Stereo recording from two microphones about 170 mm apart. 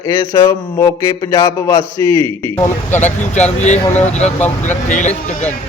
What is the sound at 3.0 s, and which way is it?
Speech, 45° left (ahead or behind).